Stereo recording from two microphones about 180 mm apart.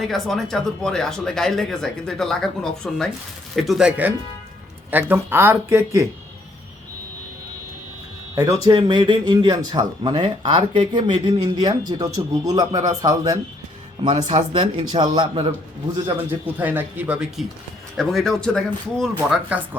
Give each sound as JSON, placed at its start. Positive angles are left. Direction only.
{"t": 0.0, "sound": "speech", "side_deg": 0}
{"t": 8.4, "sound": "speech", "side_deg": -20}
{"t": 14.2, "sound": "speech", "side_deg": -40}
{"t": 16.6, "sound": "speech", "side_deg": -10}